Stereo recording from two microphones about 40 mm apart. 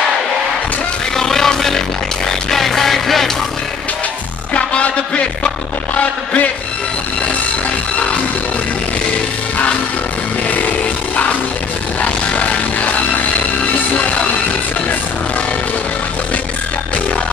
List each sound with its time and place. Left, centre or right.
1.1 s music: centre
4.6 s music: left
12.0 s music: left